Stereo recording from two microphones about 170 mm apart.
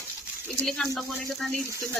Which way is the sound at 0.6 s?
Centre (ahead or behind).